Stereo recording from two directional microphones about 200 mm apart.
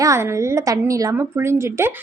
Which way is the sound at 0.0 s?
15° right (ahead or behind).